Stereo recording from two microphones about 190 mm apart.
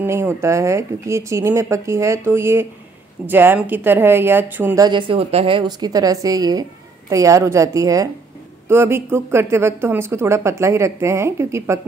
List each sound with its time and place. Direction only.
0.0 s a woman's voice: 10° right (ahead or behind)
4.8 s a woman's voice: 25° right (ahead or behind)